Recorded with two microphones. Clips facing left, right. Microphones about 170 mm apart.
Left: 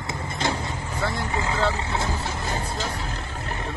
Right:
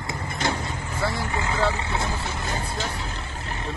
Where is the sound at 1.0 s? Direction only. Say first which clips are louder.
Even; centre (ahead or behind).